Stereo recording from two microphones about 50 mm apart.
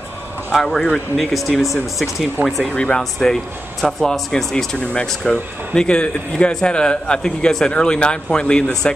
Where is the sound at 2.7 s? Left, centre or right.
Centre.